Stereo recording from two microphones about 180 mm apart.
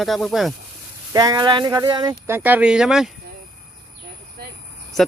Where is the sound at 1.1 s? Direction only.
20° right (ahead or behind); by 3.1 s 5° right (ahead or behind).